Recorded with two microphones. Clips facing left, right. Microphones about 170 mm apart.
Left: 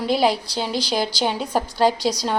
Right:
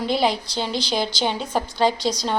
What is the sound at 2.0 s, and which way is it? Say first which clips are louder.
Speech: left 1 dB; 40° left (ahead or behind).